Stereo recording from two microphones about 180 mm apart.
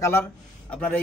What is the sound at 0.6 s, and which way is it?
Speech, 5° left (ahead or behind).